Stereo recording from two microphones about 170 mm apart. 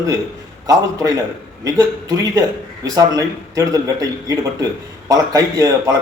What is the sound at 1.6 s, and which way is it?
A man's voice, 20° right (ahead or behind).